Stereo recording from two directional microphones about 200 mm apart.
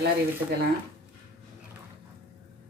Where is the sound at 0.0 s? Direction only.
50° right (ahead or behind).